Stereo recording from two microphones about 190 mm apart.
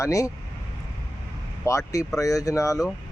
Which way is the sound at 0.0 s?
15° left (ahead or behind).